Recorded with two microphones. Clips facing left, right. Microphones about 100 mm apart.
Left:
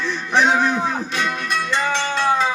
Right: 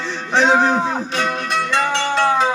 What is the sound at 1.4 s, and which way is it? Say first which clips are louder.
Music: right 2 dB; 65° right (ahead or behind).